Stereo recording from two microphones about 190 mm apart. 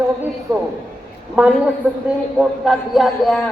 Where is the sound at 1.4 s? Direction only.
10° right (ahead or behind).